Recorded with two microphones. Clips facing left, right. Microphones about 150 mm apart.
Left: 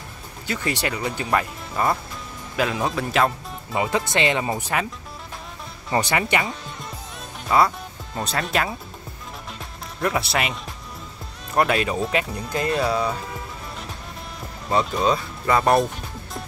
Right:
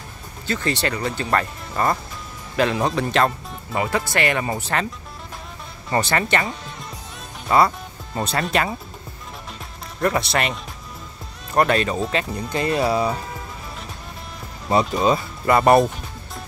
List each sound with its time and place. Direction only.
0.5 s speech: 10° left (ahead or behind)
3.8 s speech: 20° left (ahead or behind)
5.9 s speech: 15° left (ahead or behind)
7.4 s speech: centre (ahead or behind)
9.9 s speech: centre (ahead or behind)
12.8 s speech: 10° right (ahead or behind)
14.7 s speech: 5° right (ahead or behind)